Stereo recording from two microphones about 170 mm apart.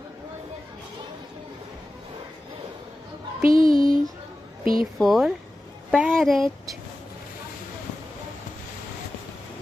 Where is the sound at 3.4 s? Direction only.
55° right (ahead or behind).